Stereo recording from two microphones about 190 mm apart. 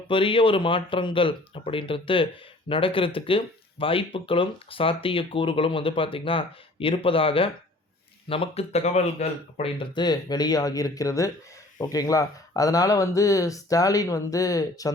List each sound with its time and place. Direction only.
0.1 s speech: 25° left (ahead or behind)